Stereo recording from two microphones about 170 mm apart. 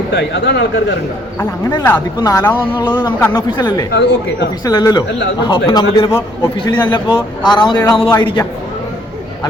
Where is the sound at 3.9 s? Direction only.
90° left.